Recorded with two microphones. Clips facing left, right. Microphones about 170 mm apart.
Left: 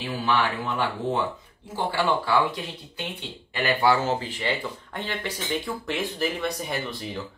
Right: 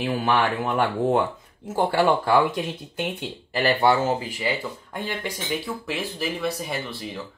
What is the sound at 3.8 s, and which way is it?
Speech, 20° right (ahead or behind).